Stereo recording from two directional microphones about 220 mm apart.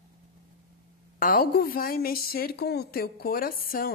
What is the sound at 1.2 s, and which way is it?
A woman's voice, 40° left (ahead or behind).